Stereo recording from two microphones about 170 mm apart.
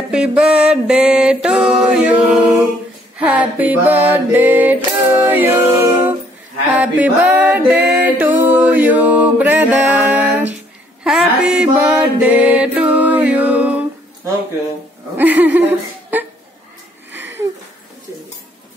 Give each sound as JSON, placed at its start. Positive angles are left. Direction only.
{"t": 0.1, "sound": "music", "side_deg": -5}
{"t": 3.2, "sound": "a sound", "side_deg": -10}
{"t": 4.9, "sound": "a capella", "side_deg": -15}
{"t": 6.7, "sound": "music", "side_deg": -10}
{"t": 15.5, "sound": "laughter", "side_deg": -10}
{"t": 17.1, "sound": "a sound", "side_deg": -90}